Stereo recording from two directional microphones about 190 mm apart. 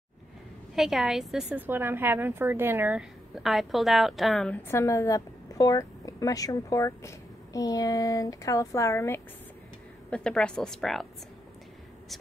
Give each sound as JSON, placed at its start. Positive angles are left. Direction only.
{"t": 0.7, "sound": "a woman's voice", "side_deg": 0}
{"t": 4.6, "sound": "a woman's voice", "side_deg": 15}
{"t": 10.0, "sound": "a woman's voice", "side_deg": 5}